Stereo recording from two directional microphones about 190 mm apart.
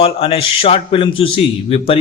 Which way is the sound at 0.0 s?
30° left (ahead or behind).